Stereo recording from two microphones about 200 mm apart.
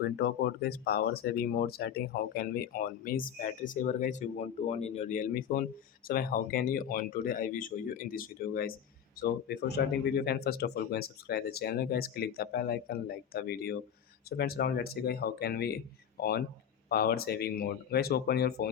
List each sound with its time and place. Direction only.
0.0 s speech: 55° left (ahead or behind)